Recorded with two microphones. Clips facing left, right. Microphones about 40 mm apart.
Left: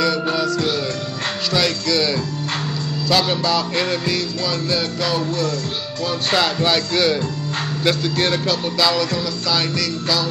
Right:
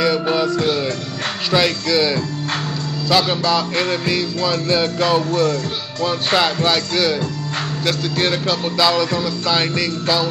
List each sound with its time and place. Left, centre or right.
0.0 s music: centre
6.0 s speech: centre
8.2 s music: centre